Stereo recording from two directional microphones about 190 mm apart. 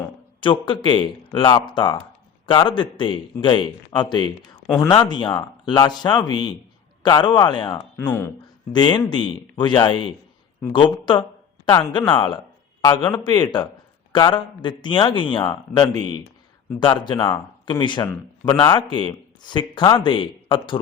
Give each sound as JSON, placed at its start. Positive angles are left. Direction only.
{"t": 0.3, "sound": "a man's voice", "side_deg": 25}
{"t": 7.9, "sound": "speech", "side_deg": 10}
{"t": 8.7, "sound": "a man's voice", "side_deg": 25}